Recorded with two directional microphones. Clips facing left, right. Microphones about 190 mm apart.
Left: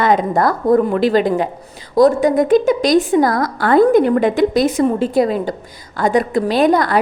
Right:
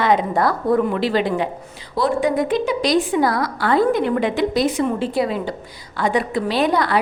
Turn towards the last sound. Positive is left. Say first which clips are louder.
# left 5 dB
turn(degrees=45)  # may be behind; listen again after turning